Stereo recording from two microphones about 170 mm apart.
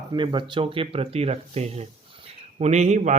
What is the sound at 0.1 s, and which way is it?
Speech, 25° right (ahead or behind).